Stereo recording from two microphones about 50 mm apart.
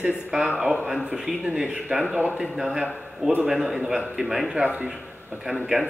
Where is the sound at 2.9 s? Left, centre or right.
Centre.